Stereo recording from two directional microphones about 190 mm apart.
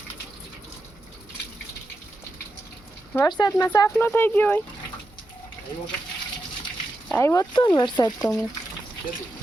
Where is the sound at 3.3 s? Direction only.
20° left (ahead or behind).